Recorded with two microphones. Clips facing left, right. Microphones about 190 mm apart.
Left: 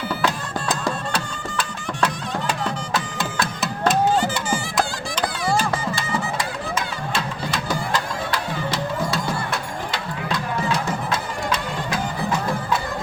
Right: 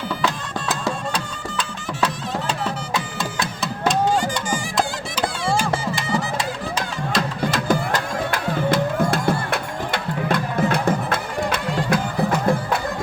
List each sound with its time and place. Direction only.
0.9 s music: 5° left (ahead or behind)
2.6 s music: 10° right (ahead or behind)
3.4 s music: 5° left (ahead or behind)
4.1 s music: 10° right (ahead or behind)
6.1 s music: 35° right (ahead or behind)
7.2 s music: 50° right (ahead or behind)